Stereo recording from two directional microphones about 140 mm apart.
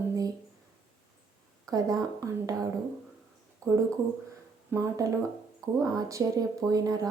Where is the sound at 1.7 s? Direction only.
25° right (ahead or behind).